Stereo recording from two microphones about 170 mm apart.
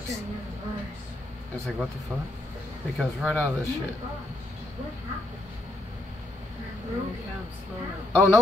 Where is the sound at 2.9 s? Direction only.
Centre (ahead or behind).